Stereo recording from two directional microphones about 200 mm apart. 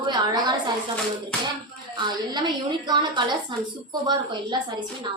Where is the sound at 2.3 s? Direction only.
20° right (ahead or behind).